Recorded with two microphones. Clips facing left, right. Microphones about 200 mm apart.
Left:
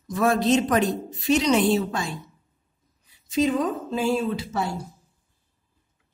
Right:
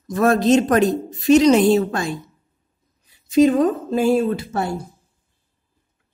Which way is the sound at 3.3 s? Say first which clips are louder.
Right 8 dB; 50° right (ahead or behind).